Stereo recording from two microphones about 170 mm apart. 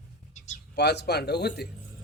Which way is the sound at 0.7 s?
80° left.